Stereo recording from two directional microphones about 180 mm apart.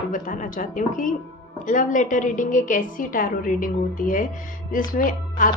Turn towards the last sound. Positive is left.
turn(degrees=45)  # may be behind; listen again after turning